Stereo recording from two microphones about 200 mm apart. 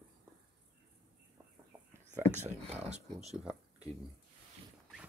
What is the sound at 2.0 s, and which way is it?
Speech, 35° right (ahead or behind).